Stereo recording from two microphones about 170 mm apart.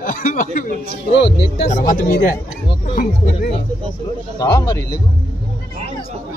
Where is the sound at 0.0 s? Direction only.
45° left (ahead or behind).